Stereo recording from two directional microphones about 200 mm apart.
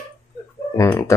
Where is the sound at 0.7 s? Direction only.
15° left (ahead or behind).